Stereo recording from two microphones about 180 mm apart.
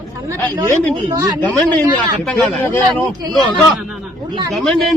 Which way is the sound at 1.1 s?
20° right (ahead or behind).